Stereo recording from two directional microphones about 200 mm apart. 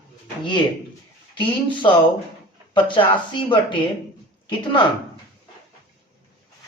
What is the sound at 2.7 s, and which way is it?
Speech, 25° left (ahead or behind).